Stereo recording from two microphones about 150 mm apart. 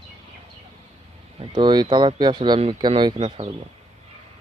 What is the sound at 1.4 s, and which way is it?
Speech, 30° right (ahead or behind).